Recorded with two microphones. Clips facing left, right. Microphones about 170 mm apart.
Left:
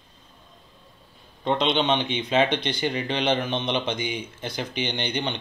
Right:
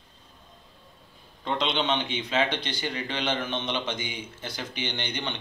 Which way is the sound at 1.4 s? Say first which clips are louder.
Left 5 dB; 20° left (ahead or behind).